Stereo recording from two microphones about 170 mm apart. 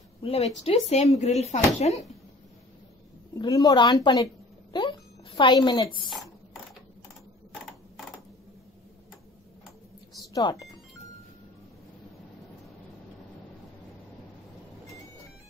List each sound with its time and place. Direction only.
0.2 s a woman's voice: 35° left (ahead or behind)
3.3 s a woman's voice: 20° left (ahead or behind)
10.1 s cash register: 20° left (ahead or behind)